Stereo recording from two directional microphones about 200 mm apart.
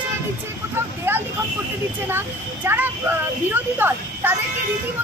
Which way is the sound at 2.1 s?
10° right (ahead or behind).